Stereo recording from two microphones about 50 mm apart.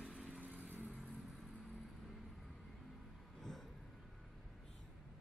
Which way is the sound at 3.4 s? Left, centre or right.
Centre.